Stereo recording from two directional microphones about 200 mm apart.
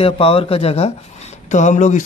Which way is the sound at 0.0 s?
30° left (ahead or behind).